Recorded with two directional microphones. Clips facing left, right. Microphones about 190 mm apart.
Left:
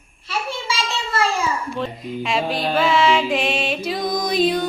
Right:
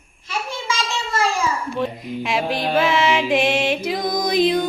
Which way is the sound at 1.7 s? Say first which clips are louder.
Right 2 dB; 10° right (ahead or behind).